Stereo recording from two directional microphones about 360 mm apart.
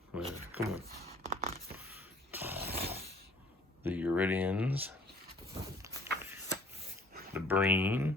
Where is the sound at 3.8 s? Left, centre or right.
Centre.